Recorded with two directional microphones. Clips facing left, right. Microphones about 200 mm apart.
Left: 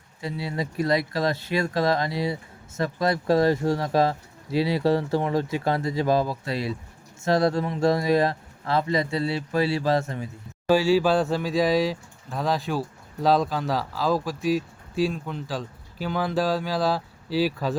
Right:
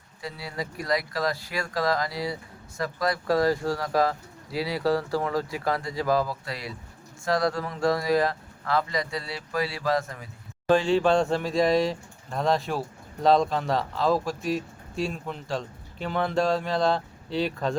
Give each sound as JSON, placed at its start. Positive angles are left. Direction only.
{"t": 0.2, "sound": "speech", "side_deg": 25}
{"t": 10.7, "sound": "speech", "side_deg": 5}